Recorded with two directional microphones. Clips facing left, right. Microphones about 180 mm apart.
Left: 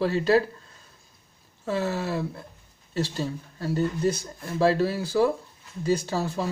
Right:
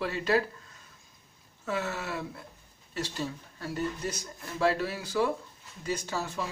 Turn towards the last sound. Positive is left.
turn(degrees=35)  # may be behind; listen again after turning